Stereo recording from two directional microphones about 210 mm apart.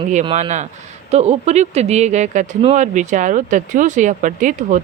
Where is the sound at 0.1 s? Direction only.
35° right (ahead or behind).